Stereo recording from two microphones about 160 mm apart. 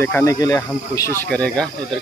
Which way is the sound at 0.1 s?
20° left (ahead or behind).